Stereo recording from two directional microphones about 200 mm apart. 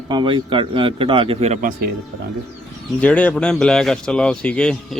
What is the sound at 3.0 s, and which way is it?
Speech, 5° left (ahead or behind).